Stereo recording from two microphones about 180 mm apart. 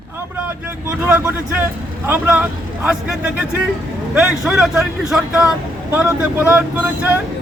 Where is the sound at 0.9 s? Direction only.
10° right (ahead or behind).